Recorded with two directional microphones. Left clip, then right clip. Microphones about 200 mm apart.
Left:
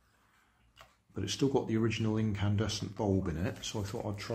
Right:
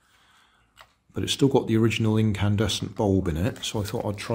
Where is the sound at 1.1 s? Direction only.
30° right (ahead or behind).